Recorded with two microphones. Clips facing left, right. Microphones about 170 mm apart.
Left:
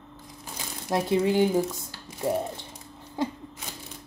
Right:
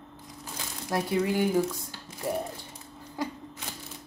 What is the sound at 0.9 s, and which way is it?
Speech, 25° left (ahead or behind).